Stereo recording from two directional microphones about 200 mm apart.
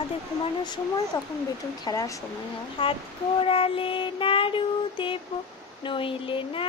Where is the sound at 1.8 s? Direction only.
15° left (ahead or behind).